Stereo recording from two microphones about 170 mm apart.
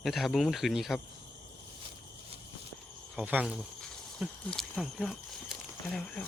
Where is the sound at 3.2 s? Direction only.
5° right (ahead or behind).